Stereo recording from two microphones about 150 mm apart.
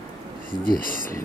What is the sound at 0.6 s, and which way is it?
Speech, 70° left (ahead or behind).